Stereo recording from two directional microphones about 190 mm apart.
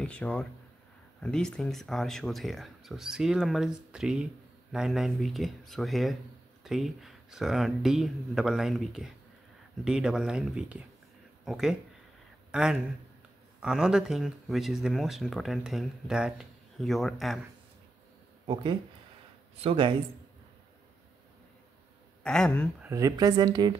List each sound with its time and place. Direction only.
0.0 s speech: 5° left (ahead or behind)
12.4 s a sound: 5° right (ahead or behind)
13.6 s speech: 5° right (ahead or behind)
18.5 s speech: 25° right (ahead or behind)
22.2 s speech: 5° left (ahead or behind)
22.8 s speech: 15° right (ahead or behind)